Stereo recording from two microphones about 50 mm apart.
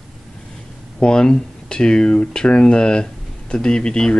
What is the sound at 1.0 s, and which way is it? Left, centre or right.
Speech, centre.